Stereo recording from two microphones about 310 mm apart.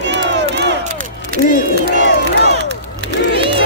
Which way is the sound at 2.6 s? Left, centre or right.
Right.